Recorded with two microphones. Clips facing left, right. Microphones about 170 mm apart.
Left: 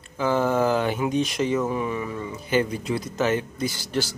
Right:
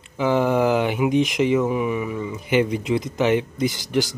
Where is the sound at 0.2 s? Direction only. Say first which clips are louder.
Right 3 dB; 15° right (ahead or behind).